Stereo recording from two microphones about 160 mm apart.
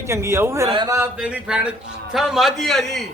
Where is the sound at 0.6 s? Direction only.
25° right (ahead or behind).